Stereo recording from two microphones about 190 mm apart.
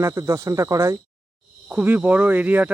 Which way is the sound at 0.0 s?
15° right (ahead or behind).